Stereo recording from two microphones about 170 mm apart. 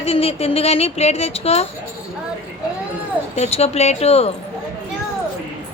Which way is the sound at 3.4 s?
40° left (ahead or behind).